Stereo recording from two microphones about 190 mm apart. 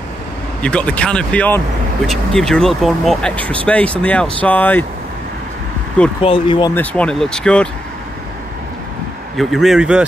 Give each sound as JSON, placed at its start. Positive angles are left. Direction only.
{"t": 0.6, "sound": "speech", "side_deg": 5}
{"t": 6.2, "sound": "speech", "side_deg": 25}
{"t": 6.7, "sound": "speech", "side_deg": 10}
{"t": 9.4, "sound": "speech", "side_deg": 0}